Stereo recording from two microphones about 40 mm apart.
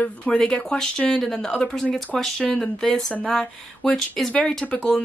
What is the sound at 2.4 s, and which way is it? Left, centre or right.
Speech, left.